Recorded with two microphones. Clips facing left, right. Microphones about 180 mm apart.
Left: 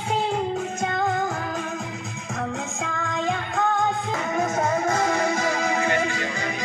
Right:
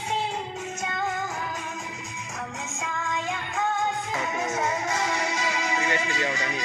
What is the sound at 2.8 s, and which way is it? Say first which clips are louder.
Music: left 3 dB; 60° left (ahead or behind).